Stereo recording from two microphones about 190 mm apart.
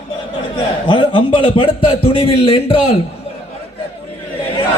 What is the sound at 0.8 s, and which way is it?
A man's voice, 25° left (ahead or behind).